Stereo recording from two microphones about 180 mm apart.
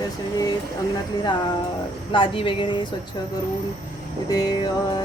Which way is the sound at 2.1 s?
30° left (ahead or behind).